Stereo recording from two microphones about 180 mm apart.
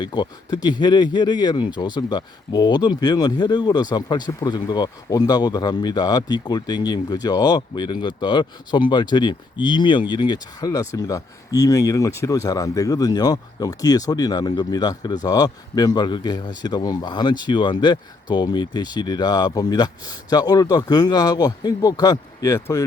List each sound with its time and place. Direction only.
0.0 s speech: 25° left (ahead or behind)